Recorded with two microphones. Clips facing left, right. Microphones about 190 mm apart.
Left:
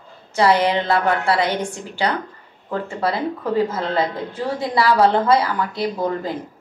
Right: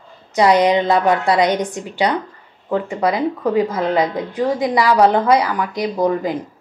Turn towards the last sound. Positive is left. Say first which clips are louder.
# right 4 dB
turn(degrees=-15)  # may be behind; listen again after turning